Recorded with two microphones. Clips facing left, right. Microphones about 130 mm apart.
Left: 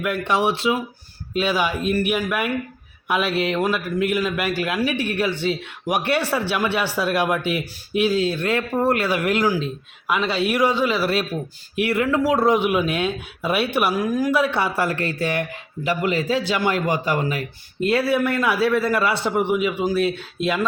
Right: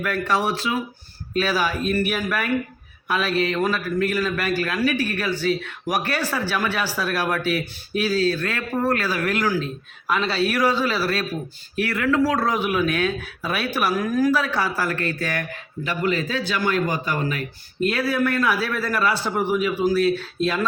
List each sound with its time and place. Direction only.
0.3 s a man's voice: 20° left (ahead or behind)